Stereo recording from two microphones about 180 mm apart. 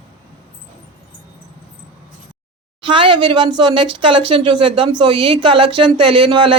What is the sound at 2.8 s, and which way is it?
A woman's voice, 25° right (ahead or behind).